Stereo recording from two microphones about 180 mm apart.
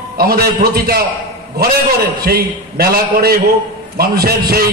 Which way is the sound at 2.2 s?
60° right (ahead or behind).